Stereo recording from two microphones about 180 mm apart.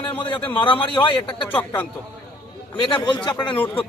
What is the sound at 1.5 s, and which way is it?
Speech, 10° left (ahead or behind).